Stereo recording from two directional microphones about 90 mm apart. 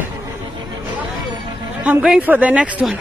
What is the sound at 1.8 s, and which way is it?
Speech, 15° right (ahead or behind).